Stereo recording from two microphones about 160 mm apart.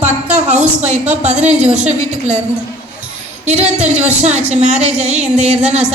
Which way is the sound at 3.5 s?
45° right (ahead or behind).